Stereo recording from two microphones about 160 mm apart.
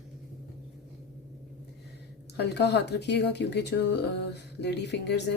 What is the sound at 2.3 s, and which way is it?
Speech, 90° left.